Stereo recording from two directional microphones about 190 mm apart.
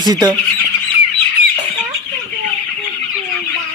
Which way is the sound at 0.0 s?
20° right (ahead or behind).